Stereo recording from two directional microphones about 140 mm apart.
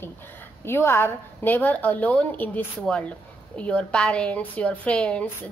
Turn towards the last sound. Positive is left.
turn(degrees=10)  # may be behind; listen again after turning